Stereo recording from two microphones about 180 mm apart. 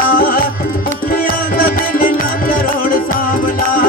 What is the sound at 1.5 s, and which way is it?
Music, 55° left (ahead or behind).